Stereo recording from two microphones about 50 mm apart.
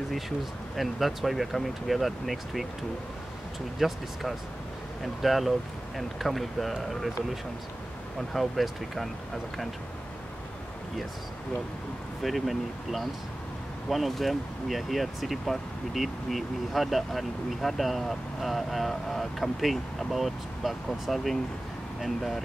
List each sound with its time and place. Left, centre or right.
0.7 s speech: centre
3.8 s speech: centre
12.2 s speech: centre